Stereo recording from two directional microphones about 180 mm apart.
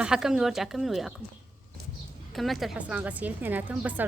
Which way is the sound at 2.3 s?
Centre (ahead or behind).